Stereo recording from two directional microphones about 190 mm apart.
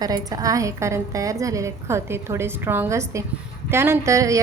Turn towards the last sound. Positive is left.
turn(degrees=-15)  # may be behind; listen again after turning